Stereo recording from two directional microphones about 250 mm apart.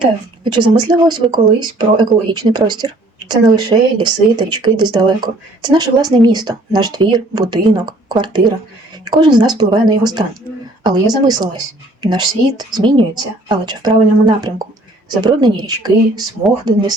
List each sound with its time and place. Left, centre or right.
0.0 s speech: centre